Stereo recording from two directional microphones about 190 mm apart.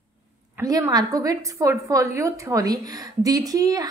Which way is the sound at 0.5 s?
15° right (ahead or behind).